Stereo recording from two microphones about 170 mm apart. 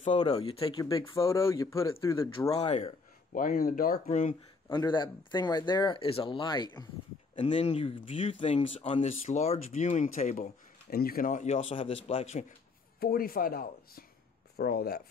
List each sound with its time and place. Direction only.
0.5 s speech: 35° left (ahead or behind); by 2.3 s 15° left (ahead or behind)
2.6 s speech: 40° left (ahead or behind)
3.3 s speech: 60° left (ahead or behind)
4.6 s speech: 25° left (ahead or behind)
7.6 s speech: 35° left (ahead or behind)
10.9 s speech: 65° left (ahead or behind); by 12.5 s 40° left (ahead or behind)
13.0 s speech: 60° left (ahead or behind)